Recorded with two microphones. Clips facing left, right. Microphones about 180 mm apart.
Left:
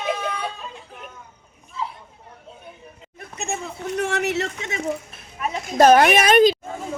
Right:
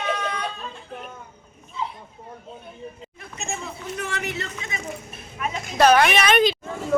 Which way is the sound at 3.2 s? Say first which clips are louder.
Left 3 dB; 60° left (ahead or behind).